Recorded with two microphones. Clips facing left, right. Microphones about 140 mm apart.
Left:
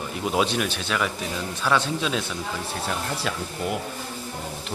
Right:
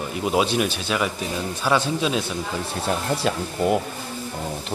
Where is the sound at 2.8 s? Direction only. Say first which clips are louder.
Right 7 dB; 30° right (ahead or behind).